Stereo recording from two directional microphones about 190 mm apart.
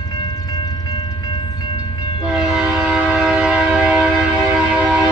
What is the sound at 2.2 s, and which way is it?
Train, 5° right (ahead or behind).